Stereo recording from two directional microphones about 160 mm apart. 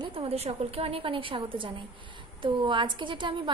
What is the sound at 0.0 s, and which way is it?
A woman's voice, 40° right (ahead or behind).